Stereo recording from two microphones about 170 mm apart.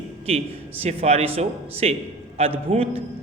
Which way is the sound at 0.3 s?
35° right (ahead or behind).